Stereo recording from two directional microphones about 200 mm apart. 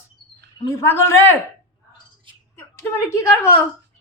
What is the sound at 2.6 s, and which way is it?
A woman's voice, 10° left (ahead or behind).